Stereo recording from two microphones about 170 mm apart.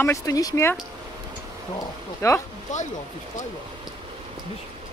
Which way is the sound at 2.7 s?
45° left (ahead or behind).